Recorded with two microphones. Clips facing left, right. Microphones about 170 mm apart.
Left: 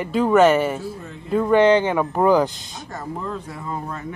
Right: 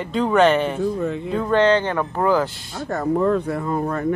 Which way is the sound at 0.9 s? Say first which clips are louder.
Right 13 dB; 70° right (ahead or behind).